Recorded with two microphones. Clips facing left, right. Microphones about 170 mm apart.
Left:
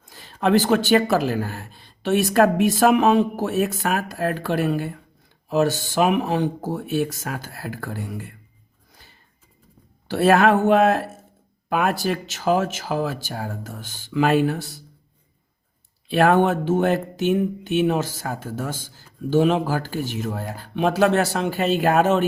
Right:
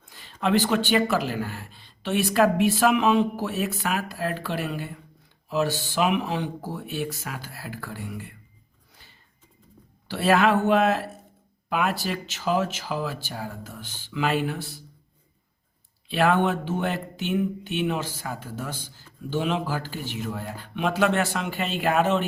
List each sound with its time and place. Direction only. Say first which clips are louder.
0.1 s speech: left 5 dB; 40° left (ahead or behind)
10.1 s speech: left 4 dB; 50° left (ahead or behind)
16.0 s speech: left 5 dB; 45° left (ahead or behind)